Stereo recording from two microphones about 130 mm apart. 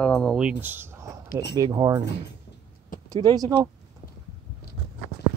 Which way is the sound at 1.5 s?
35° right (ahead or behind).